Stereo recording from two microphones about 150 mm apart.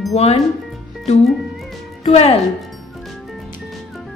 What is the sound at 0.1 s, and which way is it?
Speech, 45° left (ahead or behind).